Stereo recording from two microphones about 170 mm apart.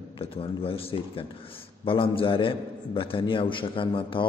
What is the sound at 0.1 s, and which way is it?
A man's voice, 35° left (ahead or behind).